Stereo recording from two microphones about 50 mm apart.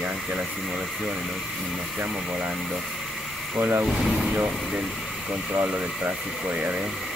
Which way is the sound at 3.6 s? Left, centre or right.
Right.